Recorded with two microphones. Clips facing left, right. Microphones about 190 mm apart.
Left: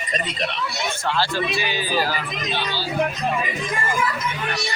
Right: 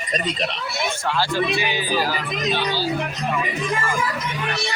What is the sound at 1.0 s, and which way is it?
Speech, 15° right (ahead or behind).